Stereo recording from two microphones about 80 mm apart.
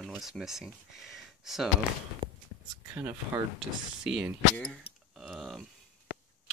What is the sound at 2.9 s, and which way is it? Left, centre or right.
Speech, right.